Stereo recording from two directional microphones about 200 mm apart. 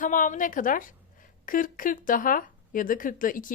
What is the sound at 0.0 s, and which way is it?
A woman's voice, 40° left (ahead or behind).